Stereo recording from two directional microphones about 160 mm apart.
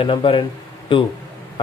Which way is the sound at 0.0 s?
30° left (ahead or behind).